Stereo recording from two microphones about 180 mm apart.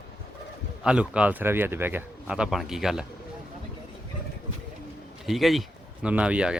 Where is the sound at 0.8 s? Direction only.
5° right (ahead or behind).